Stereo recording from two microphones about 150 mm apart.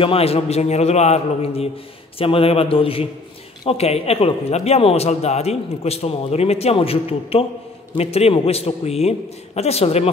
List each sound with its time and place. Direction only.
0.0 s a man's voice: 40° left (ahead or behind)